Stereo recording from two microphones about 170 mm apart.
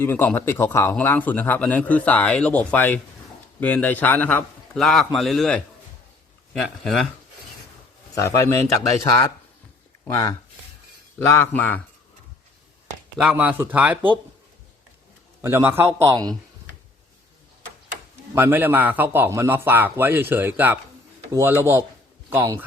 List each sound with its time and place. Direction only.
0.0 s a man's voice: 10° left (ahead or behind)
8.1 s a man's voice: 20° left (ahead or behind)
10.1 s a man's voice: 20° left (ahead or behind)
13.1 s a man's voice: 5° right (ahead or behind)
15.4 s a man's voice: 15° right (ahead or behind)
18.3 s a man's voice: 10° right (ahead or behind)